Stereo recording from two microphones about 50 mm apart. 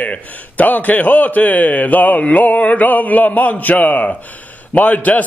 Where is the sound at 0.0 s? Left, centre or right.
Left.